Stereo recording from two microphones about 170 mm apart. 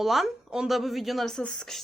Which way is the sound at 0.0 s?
Centre (ahead or behind).